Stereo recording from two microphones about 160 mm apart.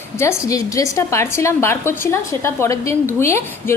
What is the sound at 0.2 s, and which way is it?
A woman's voice, 20° left (ahead or behind).